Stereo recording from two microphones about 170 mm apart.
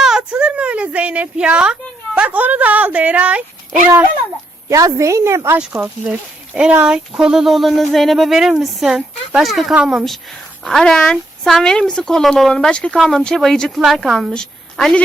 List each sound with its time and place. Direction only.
0.0 s a woman's voice: 5° right (ahead or behind)
4.7 s a woman's voice: 20° right (ahead or behind); by 15.0 s 5° left (ahead or behind)